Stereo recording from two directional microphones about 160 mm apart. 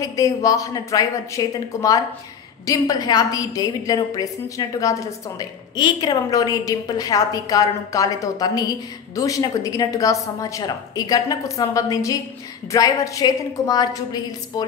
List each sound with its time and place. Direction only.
0.0 s a woman's voice: 20° left (ahead or behind)